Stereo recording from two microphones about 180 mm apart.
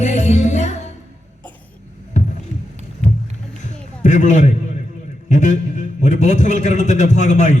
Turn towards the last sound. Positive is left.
turn(degrees=40)  # may be behind; listen again after turning